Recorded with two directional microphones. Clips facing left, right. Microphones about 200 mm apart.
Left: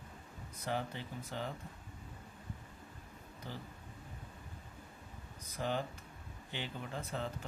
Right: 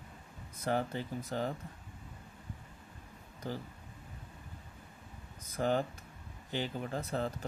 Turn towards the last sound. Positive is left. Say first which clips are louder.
# right 5 dB
turn(degrees=-40)  # may be behind; listen again after turning